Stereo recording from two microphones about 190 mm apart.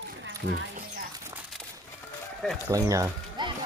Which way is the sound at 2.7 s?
15° right (ahead or behind).